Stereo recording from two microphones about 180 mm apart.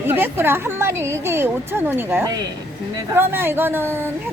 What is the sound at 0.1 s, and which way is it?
A woman's voice, 15° right (ahead or behind).